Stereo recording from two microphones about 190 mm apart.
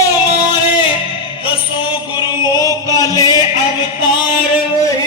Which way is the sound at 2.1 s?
20° left (ahead or behind).